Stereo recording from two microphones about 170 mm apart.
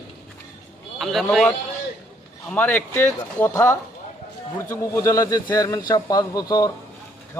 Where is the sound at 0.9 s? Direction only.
Centre (ahead or behind).